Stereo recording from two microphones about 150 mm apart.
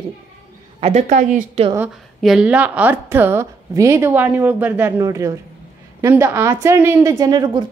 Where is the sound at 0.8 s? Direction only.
50° right (ahead or behind).